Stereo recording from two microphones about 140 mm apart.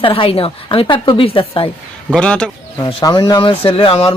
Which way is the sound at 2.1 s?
5° left (ahead or behind).